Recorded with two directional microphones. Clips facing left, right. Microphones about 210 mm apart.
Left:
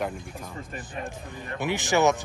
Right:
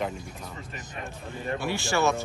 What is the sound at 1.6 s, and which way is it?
Speech, 20° left (ahead or behind).